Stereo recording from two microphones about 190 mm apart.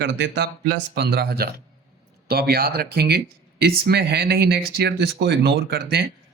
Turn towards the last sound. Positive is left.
turn(degrees=-55)  # may be behind; listen again after turning